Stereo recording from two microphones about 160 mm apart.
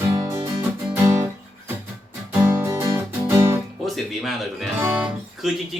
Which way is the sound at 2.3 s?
15° right (ahead or behind).